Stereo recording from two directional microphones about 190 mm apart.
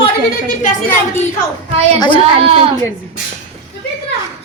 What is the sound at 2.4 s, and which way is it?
Speech, 30° right (ahead or behind).